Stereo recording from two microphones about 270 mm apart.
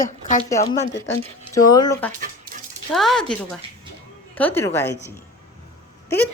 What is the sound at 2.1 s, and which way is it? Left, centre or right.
Dog, right.